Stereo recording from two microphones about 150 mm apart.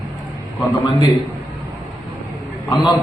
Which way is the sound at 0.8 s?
30° left (ahead or behind).